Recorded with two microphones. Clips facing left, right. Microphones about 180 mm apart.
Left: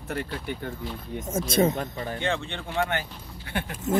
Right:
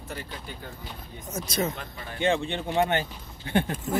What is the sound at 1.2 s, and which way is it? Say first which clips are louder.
Speech: left 6 dB; 50° left (ahead or behind).